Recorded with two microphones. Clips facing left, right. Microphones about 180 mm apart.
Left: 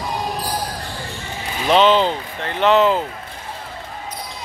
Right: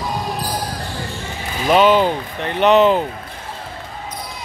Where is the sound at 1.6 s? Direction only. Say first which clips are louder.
Right 1 dB; 10° right (ahead or behind).